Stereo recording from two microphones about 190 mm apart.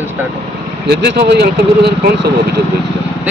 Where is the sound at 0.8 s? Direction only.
60° right (ahead or behind).